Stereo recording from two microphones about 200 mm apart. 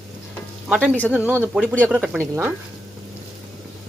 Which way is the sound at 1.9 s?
5° right (ahead or behind).